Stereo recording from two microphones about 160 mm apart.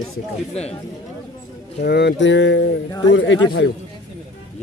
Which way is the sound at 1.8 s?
90° left.